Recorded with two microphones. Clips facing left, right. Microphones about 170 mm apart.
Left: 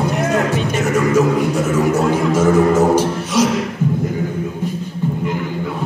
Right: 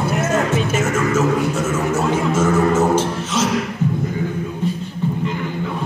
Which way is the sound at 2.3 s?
15° left (ahead or behind).